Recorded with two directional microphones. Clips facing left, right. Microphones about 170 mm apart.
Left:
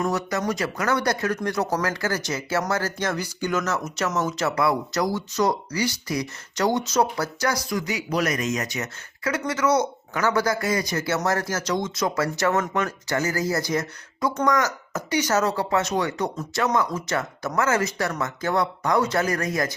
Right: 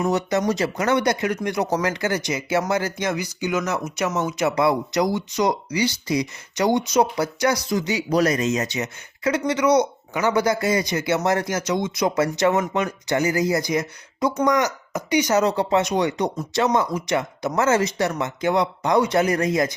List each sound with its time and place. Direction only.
0.1 s speech: 20° right (ahead or behind)